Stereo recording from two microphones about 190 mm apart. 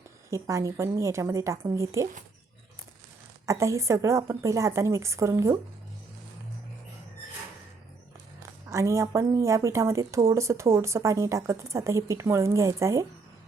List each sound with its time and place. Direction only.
0.3 s speech: 15° right (ahead or behind)
3.4 s speech: 15° right (ahead or behind)
8.7 s speech: 15° right (ahead or behind)